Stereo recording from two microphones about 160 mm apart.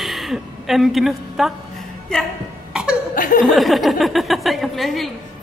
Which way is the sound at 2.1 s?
5° left (ahead or behind).